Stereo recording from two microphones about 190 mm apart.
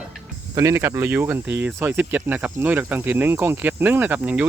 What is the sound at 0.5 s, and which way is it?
Speech, 15° right (ahead or behind).